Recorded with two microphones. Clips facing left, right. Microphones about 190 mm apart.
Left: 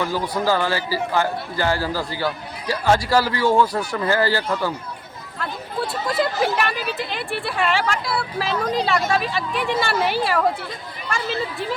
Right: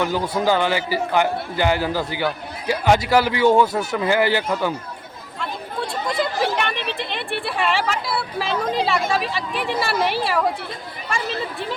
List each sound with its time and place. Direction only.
0.0 s a man's voice: 20° right (ahead or behind)
5.4 s speech: 5° left (ahead or behind)